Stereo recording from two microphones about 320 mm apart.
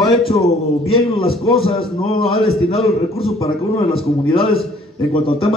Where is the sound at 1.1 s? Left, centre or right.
Centre.